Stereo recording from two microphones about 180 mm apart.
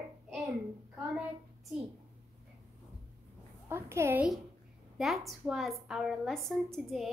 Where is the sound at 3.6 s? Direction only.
15° right (ahead or behind).